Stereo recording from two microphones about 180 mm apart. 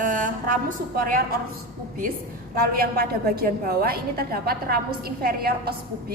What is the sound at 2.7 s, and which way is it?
A woman's voice, 60° right (ahead or behind).